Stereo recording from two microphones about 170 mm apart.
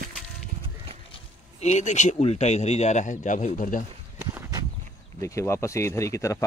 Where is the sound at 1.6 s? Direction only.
45° left (ahead or behind).